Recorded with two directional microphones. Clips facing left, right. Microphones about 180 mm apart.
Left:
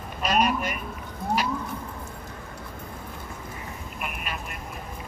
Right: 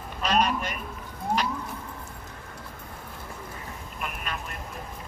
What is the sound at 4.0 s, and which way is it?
Telephone, 10° left (ahead or behind).